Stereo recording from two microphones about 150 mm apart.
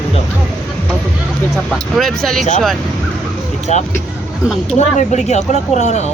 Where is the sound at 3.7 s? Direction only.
50° left (ahead or behind).